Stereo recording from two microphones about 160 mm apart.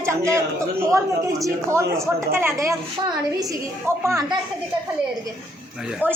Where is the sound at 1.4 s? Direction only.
15° right (ahead or behind).